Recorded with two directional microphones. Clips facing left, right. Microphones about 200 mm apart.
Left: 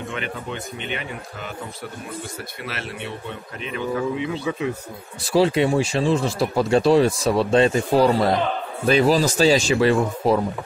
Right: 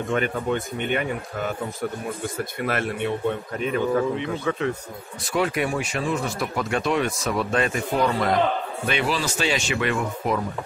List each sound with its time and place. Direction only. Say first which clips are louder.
0.1 s a man's voice: right 6 dB; 50° right (ahead or behind)
4.5 s speech: right 2 dB; 10° left (ahead or behind)
5.2 s speech: left 6 dB; 30° left (ahead or behind)